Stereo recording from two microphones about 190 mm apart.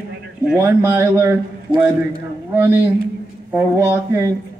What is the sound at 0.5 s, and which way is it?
Speech, 10° right (ahead or behind).